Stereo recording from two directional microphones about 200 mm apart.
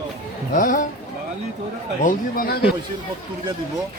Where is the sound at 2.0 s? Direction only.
45° left (ahead or behind).